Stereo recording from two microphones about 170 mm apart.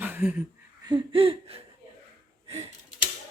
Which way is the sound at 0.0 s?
10° right (ahead or behind).